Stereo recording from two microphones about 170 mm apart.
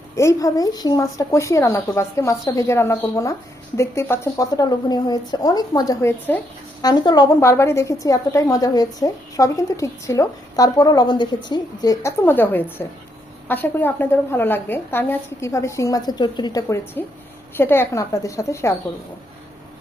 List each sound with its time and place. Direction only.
0.2 s a woman's voice: 20° left (ahead or behind)
6.8 s a woman's voice: 25° left (ahead or behind)